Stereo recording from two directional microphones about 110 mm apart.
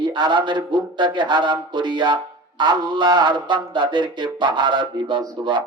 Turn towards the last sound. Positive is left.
turn(degrees=-45)  # may be behind; listen again after turning